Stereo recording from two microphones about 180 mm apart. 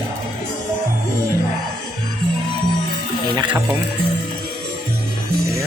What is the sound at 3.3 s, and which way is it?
Speech, 20° right (ahead or behind).